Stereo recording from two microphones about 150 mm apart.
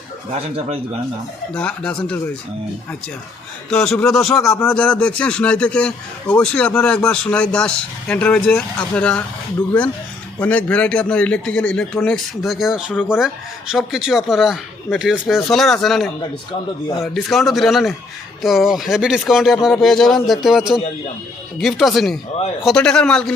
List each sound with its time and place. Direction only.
1.5 s speech: 5° left (ahead or behind)
3.7 s speech: 5° left (ahead or behind)
4.4 s speech: 20° left (ahead or behind)
4.7 s a man's voice: 5° left (ahead or behind)
10.4 s a man's voice: 10° left (ahead or behind)